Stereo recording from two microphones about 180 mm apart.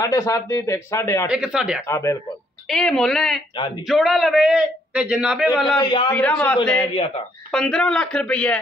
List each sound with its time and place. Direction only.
0.0 s speech: 15° left (ahead or behind)
1.3 s a man's voice: 5° right (ahead or behind)
1.9 s speech: 15° left (ahead or behind)
2.7 s a man's voice: 5° left (ahead or behind)
5.8 s a man's voice: 25° left (ahead or behind)
6.1 s a man's voice: 5° left (ahead or behind)